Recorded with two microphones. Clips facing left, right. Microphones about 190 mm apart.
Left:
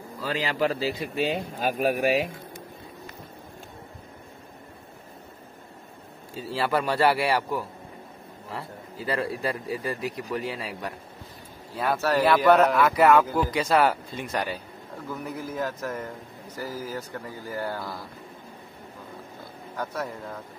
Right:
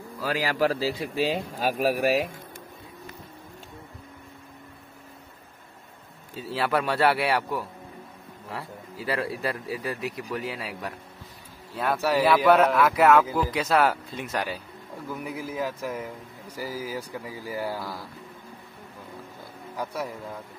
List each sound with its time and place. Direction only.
0.4 s a man's voice: 20° left (ahead or behind)
0.9 s speech: centre (ahead or behind)
6.3 s speech: centre (ahead or behind)
19.8 s speech: 10° right (ahead or behind)